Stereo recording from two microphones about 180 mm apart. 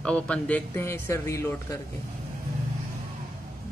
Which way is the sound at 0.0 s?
5° left (ahead or behind).